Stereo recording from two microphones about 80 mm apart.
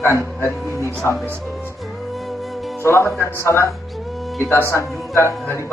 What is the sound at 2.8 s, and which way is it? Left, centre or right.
A man's voice, left.